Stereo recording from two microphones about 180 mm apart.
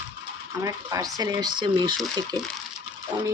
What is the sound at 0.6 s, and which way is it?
Speech, 20° right (ahead or behind).